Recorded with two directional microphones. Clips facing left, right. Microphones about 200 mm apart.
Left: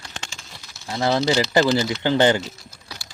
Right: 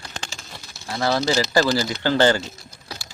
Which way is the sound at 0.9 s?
20° left (ahead or behind).